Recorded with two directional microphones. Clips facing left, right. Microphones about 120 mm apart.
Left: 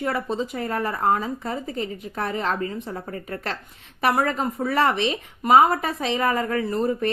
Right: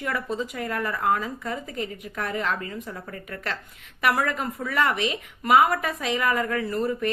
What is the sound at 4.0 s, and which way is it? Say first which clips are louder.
Speech: left 3 dB; 30° left (ahead or behind).